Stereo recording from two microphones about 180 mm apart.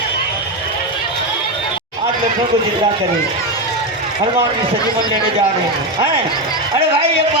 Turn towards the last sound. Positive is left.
turn(degrees=-30)  # may be behind; listen again after turning